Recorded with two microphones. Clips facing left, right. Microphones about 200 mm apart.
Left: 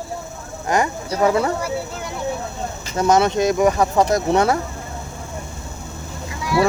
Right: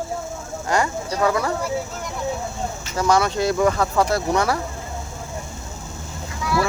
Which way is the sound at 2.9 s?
25° left (ahead or behind).